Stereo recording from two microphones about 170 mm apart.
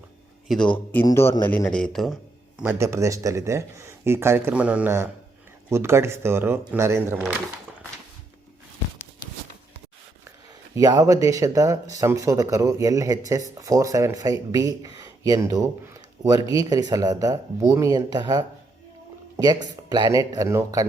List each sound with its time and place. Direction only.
0.4 s a man's voice: 5° left (ahead or behind)
2.6 s speech: 15° right (ahead or behind)
10.8 s speech: 20° right (ahead or behind)